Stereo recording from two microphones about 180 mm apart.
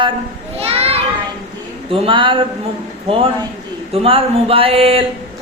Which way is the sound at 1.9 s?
30° right (ahead or behind).